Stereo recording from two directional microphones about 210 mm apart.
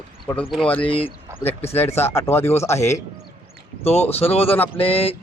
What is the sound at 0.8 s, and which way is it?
Speech, 25° left (ahead or behind).